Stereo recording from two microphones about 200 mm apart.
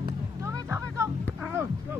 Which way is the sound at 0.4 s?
15° right (ahead or behind).